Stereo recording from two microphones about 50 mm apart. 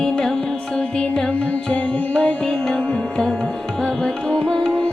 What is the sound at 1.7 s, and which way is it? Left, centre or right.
Music, left.